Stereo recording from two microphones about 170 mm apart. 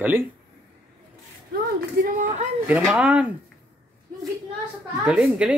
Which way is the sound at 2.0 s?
45° right (ahead or behind).